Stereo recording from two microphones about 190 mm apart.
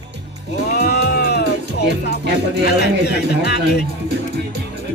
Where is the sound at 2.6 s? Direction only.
60° left (ahead or behind).